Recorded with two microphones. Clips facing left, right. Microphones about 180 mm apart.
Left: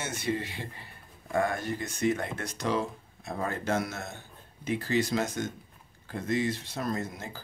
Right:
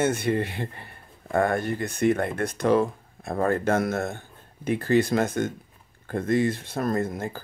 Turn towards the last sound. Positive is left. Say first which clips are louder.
# right 8 dB
turn(degrees=-55)  # may be behind; listen again after turning